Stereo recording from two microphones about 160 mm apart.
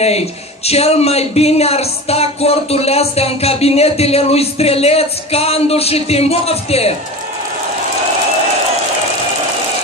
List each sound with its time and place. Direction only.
0.0 s speech: 40° left (ahead or behind)